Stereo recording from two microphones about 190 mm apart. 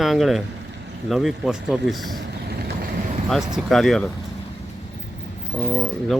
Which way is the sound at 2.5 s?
55° right (ahead or behind).